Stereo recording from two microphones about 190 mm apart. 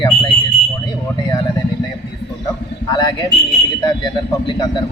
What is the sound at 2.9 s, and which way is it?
Speech, 20° left (ahead or behind).